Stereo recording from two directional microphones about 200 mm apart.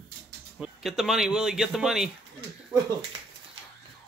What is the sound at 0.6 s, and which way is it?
Speech, centre (ahead or behind).